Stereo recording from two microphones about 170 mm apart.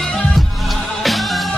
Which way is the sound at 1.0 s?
Centre (ahead or behind).